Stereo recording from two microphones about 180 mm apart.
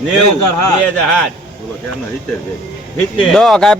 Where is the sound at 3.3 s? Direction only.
Centre (ahead or behind).